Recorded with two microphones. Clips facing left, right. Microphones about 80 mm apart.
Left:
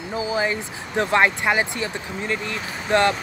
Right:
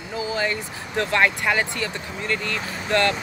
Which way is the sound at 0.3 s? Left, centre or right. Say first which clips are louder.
Left 2 dB; centre.